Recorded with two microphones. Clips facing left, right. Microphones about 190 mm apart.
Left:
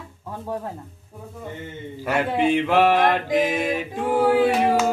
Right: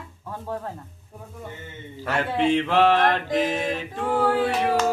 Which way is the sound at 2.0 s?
10° left (ahead or behind).